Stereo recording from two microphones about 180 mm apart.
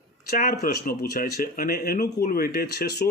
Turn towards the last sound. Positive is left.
turn(degrees=60)  # may be behind; listen again after turning